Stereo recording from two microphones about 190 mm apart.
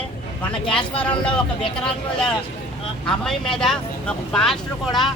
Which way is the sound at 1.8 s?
5° left (ahead or behind).